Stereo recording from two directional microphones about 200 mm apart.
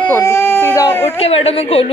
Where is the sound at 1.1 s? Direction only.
30° left (ahead or behind).